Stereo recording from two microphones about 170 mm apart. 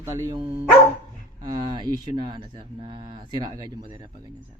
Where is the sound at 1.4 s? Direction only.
25° right (ahead or behind).